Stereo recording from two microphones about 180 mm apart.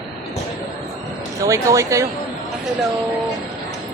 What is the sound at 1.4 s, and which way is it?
Speech, 20° right (ahead or behind).